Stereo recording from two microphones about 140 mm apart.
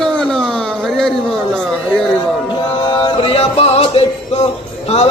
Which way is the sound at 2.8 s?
30° left (ahead or behind).